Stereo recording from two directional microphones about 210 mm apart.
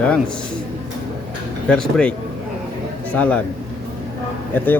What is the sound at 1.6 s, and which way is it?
Speech, 5° left (ahead or behind).